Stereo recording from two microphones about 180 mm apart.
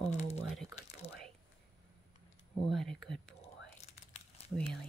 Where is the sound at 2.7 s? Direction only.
Centre (ahead or behind).